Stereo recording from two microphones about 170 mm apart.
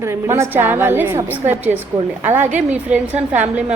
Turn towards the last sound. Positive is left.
turn(degrees=-10)  # may be behind; listen again after turning